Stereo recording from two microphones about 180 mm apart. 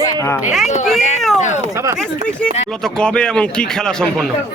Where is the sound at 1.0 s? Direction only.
40° left (ahead or behind).